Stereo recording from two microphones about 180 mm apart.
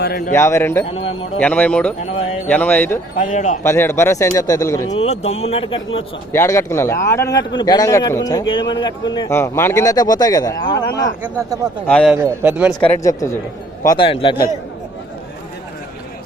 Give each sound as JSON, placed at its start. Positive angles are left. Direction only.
{"t": 0.0, "sound": "speech", "side_deg": 60}
{"t": 0.3, "sound": "a man's voice", "side_deg": 15}
{"t": 0.9, "sound": "speech", "side_deg": 30}
{"t": 1.4, "sound": "a man's voice", "side_deg": 10}
{"t": 3.2, "sound": "speech", "side_deg": 45}
{"t": 3.6, "sound": "a man's voice", "side_deg": 15}
{"t": 4.9, "sound": "speech", "side_deg": 35}
{"t": 6.3, "sound": "a man's voice", "side_deg": 15}
{"t": 11.2, "sound": "a man's voice", "side_deg": -15}
{"t": 11.9, "sound": "a man's voice", "side_deg": 5}
{"t": 12.1, "sound": "a man's voice", "side_deg": -10}
{"t": 13.8, "sound": "speech", "side_deg": 25}